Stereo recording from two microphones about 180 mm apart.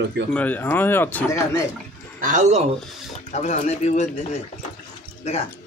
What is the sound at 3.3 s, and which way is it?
Speech, 40° left (ahead or behind).